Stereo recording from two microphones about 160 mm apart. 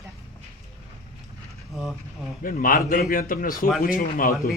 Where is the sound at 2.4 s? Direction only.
60° left (ahead or behind).